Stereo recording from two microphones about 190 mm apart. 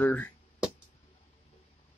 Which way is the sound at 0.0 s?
5° left (ahead or behind).